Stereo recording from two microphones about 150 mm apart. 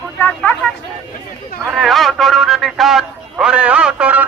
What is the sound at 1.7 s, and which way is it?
A man's voice, centre (ahead or behind).